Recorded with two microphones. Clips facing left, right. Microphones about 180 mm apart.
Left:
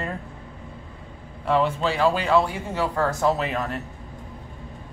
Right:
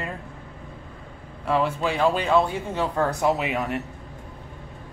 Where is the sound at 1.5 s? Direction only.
5° right (ahead or behind).